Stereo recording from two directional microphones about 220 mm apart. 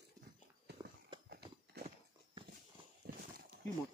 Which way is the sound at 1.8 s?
45° right (ahead or behind).